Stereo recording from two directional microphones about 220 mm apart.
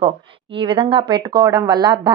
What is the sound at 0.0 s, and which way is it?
Speech, 25° right (ahead or behind).